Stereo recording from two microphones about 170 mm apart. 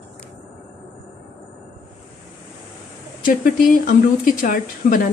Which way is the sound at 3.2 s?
55° left (ahead or behind).